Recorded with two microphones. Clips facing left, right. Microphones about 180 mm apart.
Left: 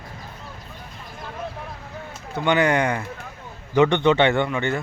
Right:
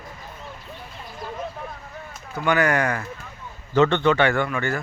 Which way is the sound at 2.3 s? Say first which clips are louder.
Left 1 dB; 20° left (ahead or behind).